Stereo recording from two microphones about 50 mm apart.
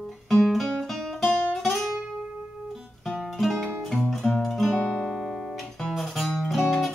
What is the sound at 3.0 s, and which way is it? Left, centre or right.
Music, centre.